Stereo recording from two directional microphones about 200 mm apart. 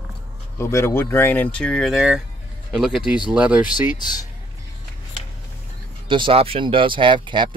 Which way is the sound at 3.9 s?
20° left (ahead or behind).